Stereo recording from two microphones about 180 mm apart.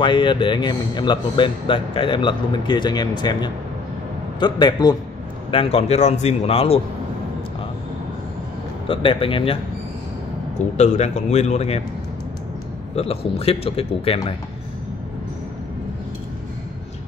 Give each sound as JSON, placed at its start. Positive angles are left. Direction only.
{"t": 0.0, "sound": "a man's voice", "side_deg": 25}
{"t": 8.8, "sound": "speech", "side_deg": 30}
{"t": 10.6, "sound": "a man's voice", "side_deg": 40}
{"t": 12.9, "sound": "a man's voice", "side_deg": 35}